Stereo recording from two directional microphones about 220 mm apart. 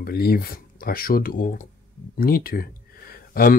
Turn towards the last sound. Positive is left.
turn(degrees=40)  # may be behind; listen again after turning